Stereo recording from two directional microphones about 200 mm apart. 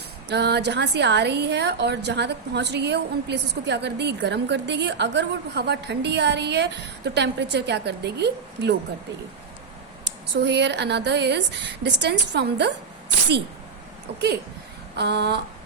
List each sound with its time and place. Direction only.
0.3 s a woman's voice: 55° right (ahead or behind)
10.3 s a woman's voice: 60° right (ahead or behind)
14.1 s a woman's voice: 55° right (ahead or behind)